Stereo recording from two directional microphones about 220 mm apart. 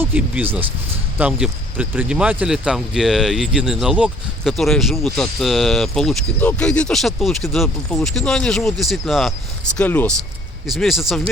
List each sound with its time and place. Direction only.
0.0 s speech: 10° right (ahead or behind)